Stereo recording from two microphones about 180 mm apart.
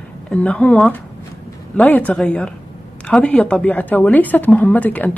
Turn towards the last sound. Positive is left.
turn(degrees=10)  # may be behind; listen again after turning